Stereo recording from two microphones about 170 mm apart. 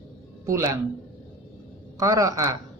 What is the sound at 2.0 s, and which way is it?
Speech, 20° right (ahead or behind).